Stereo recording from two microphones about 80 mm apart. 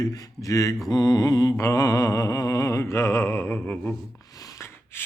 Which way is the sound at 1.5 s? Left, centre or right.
Left.